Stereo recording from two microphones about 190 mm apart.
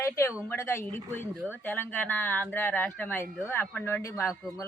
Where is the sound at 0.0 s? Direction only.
15° left (ahead or behind).